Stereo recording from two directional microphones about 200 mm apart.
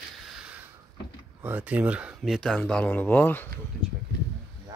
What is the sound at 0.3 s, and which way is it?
Snort, 5° right (ahead or behind).